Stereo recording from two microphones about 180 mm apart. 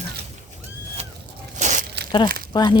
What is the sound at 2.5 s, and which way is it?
Speech, 25° left (ahead or behind).